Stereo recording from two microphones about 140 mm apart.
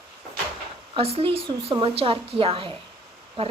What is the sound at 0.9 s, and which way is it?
A woman's voice, 45° right (ahead or behind).